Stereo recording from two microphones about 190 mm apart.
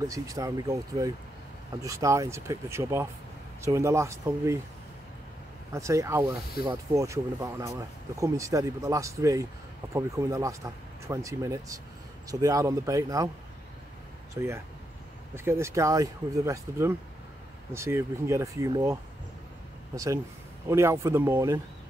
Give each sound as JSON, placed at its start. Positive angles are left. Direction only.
{"t": 0.0, "sound": "speech", "side_deg": -20}
{"t": 5.7, "sound": "speech", "side_deg": -15}
{"t": 14.3, "sound": "speech", "side_deg": -15}